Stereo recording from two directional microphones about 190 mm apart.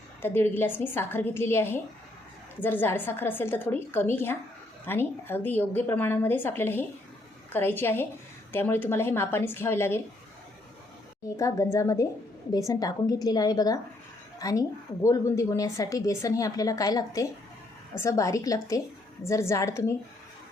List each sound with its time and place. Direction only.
0.2 s a woman's voice: 10° left (ahead or behind)
11.3 s a woman's voice: 15° left (ahead or behind)